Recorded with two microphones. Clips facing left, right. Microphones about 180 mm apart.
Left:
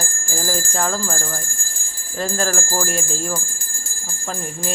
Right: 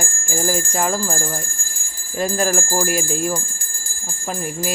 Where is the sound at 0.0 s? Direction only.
15° right (ahead or behind).